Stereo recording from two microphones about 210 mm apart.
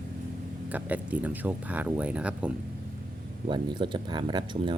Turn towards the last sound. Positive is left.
turn(degrees=-20)  # may be behind; listen again after turning